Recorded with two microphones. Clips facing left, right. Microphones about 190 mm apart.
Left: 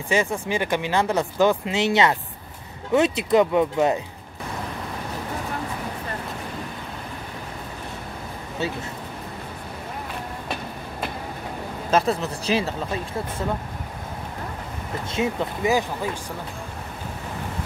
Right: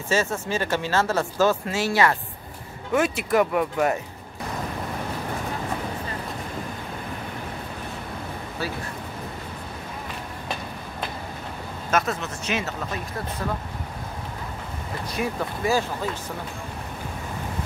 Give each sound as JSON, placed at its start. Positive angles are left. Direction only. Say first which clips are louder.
{"t": 0.1, "sound": "speech", "louder": "left 1 dB", "side_deg": 15}
{"t": 11.9, "sound": "speech", "louder": "left 4 dB", "side_deg": 35}
{"t": 15.0, "sound": "speech", "louder": "left 3 dB", "side_deg": 25}